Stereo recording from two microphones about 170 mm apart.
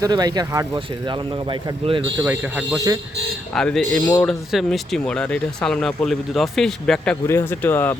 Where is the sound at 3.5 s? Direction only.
5° left (ahead or behind).